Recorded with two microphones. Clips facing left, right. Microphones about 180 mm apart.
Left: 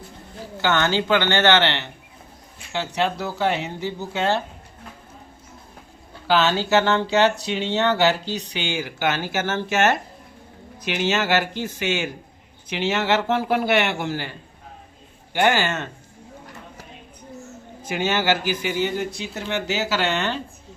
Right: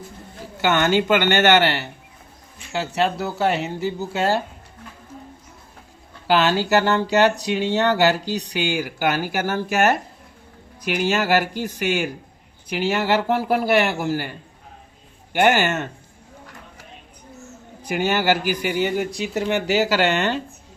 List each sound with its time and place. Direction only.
0.6 s speech: 15° right (ahead or behind)
6.2 s speech: 10° right (ahead or behind)
15.3 s speech: 15° right (ahead or behind)
18.0 s speech: 15° right (ahead or behind)